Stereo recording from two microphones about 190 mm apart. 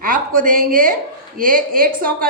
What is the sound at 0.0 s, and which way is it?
A woman's voice, 45° right (ahead or behind).